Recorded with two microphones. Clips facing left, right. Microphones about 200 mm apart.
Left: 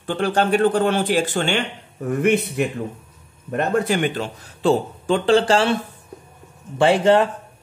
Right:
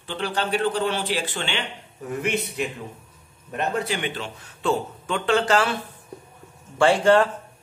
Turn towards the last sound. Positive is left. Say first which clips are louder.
# left 2 dB
turn(degrees=20)  # may be behind; listen again after turning